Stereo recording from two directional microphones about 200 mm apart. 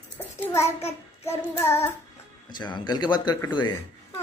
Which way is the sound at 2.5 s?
20° left (ahead or behind).